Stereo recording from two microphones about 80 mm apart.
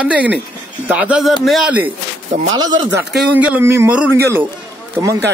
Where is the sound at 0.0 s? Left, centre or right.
Centre.